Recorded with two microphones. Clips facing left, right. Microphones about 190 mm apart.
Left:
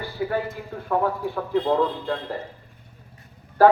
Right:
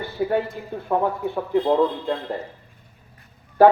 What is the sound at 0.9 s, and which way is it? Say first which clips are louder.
Speech: right 1 dB; 20° right (ahead or behind).